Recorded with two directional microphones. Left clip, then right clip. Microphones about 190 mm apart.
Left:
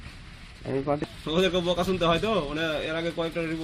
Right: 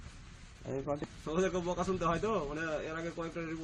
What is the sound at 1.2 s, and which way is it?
A man's voice, 40° left (ahead or behind).